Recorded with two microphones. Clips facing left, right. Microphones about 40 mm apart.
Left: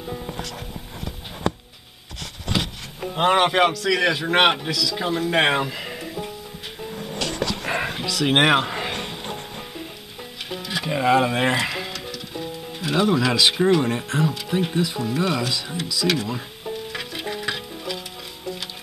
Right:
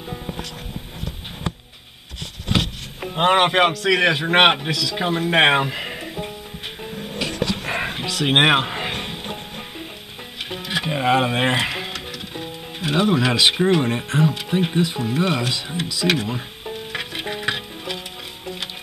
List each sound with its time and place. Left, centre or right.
0.0 s music: centre
2.4 s wood: centre
3.1 s speech: centre
7.2 s music: right
10.5 s speech: right
16.9 s music: right